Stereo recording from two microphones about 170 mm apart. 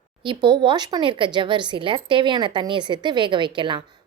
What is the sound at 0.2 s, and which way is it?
Speech, 30° right (ahead or behind).